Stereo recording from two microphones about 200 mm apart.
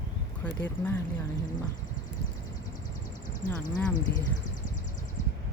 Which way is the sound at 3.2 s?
40° left (ahead or behind).